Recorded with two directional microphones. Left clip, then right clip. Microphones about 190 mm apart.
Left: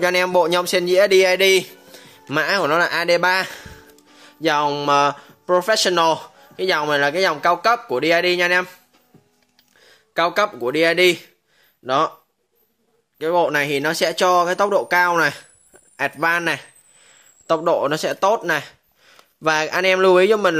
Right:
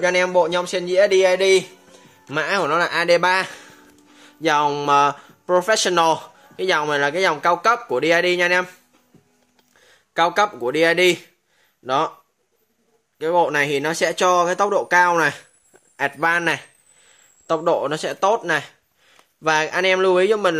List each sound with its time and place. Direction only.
0.0 s speech: 40° left (ahead or behind)
2.2 s speech: 30° left (ahead or behind); by 8.6 s 5° left (ahead or behind)
9.8 s speech: 5° left (ahead or behind)
13.2 s speech: 10° left (ahead or behind)